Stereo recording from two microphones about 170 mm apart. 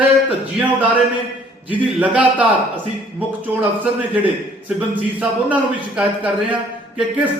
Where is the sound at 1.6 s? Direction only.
10° right (ahead or behind).